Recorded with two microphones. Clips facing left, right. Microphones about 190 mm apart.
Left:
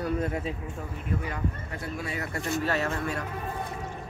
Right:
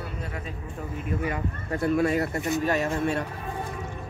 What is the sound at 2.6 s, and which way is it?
Speech, 15° right (ahead or behind).